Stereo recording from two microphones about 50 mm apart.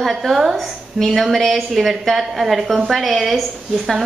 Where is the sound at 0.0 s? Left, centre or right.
Centre.